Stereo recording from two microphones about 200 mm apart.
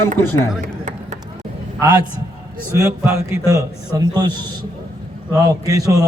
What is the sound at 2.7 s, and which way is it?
A man's voice, 15° right (ahead or behind).